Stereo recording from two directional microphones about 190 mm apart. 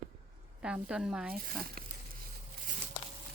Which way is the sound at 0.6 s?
5° right (ahead or behind).